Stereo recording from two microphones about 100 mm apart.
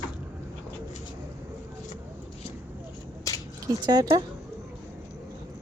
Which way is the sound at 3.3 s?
35° left (ahead or behind).